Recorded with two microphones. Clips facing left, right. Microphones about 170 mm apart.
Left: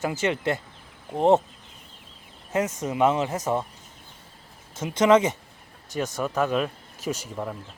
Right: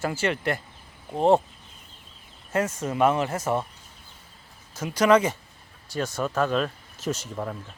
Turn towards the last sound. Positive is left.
turn(degrees=5)  # may be behind; listen again after turning